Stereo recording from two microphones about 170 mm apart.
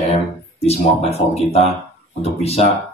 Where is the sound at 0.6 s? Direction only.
35° left (ahead or behind).